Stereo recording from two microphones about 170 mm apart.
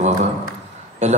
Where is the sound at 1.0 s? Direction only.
45° right (ahead or behind).